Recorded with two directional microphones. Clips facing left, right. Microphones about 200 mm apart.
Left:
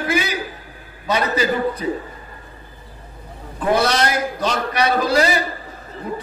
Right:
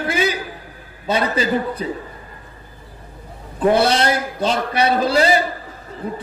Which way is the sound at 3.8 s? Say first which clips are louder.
Right 1 dB; 30° right (ahead or behind).